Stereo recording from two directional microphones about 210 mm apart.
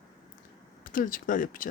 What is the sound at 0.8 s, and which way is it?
Speech, 40° left (ahead or behind).